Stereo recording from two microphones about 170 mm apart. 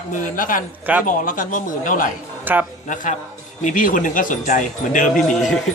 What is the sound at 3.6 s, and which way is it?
A man's voice, 50° left (ahead or behind).